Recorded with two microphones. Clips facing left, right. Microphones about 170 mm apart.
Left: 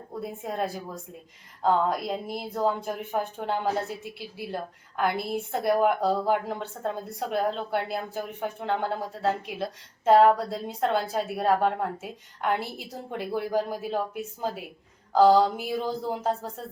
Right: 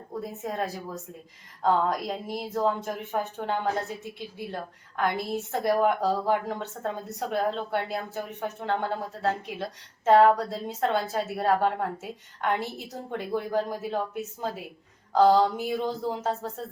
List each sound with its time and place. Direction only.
0.2 s speech: 5° left (ahead or behind)